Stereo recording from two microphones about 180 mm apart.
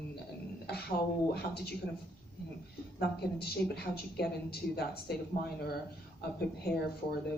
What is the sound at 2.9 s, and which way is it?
Speech, 60° left (ahead or behind).